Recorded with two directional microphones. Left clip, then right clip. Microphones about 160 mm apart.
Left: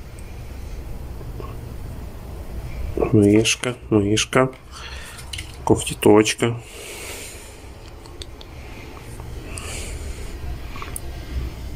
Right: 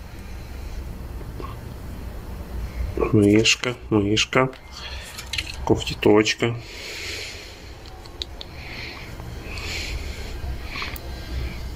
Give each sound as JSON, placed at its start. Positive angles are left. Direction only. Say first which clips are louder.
{"t": 3.0, "sound": "speech", "louder": "left 1 dB", "side_deg": 10}